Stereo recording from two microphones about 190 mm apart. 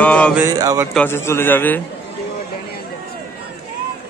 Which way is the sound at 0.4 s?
20° right (ahead or behind).